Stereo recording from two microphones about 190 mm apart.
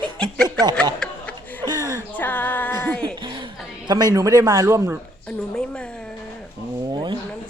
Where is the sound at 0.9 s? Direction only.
5° left (ahead or behind).